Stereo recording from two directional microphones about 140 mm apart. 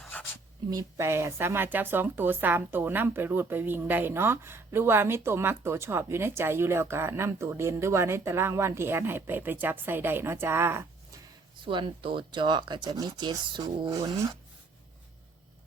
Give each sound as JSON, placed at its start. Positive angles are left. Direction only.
{"t": 0.7, "sound": "speech", "side_deg": -25}
{"t": 11.6, "sound": "speech", "side_deg": -35}